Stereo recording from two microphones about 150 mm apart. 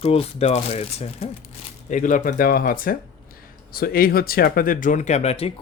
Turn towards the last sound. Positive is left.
turn(degrees=40)  # may be behind; listen again after turning